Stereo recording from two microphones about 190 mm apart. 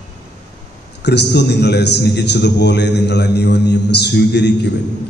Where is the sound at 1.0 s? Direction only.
60° left (ahead or behind).